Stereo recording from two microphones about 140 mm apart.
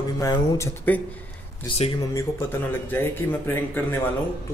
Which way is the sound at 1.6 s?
50° left (ahead or behind).